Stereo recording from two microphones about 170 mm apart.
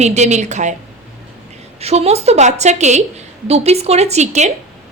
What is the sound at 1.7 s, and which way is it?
A woman's voice, 40° right (ahead or behind).